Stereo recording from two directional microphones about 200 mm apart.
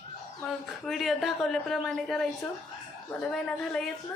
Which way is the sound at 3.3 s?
5° left (ahead or behind).